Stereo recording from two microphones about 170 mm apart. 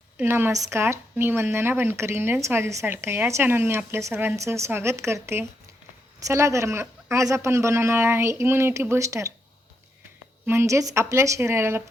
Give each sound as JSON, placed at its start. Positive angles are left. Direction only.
{"t": 0.2, "sound": "speech", "side_deg": -10}
{"t": 10.4, "sound": "speech", "side_deg": -15}